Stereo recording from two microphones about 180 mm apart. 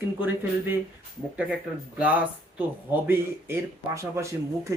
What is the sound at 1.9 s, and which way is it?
Speech, 10° right (ahead or behind).